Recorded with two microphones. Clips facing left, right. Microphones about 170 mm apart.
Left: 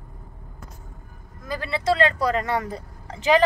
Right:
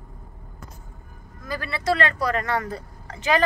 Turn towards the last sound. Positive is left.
turn(degrees=25)  # may be behind; listen again after turning